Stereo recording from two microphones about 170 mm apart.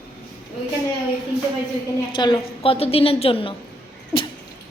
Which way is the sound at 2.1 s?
30° left (ahead or behind).